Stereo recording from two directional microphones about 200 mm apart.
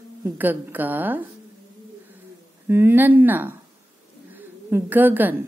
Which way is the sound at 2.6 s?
10° right (ahead or behind).